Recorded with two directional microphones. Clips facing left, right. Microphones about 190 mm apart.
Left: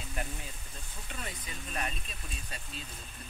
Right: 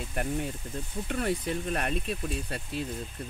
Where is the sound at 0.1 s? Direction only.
55° right (ahead or behind).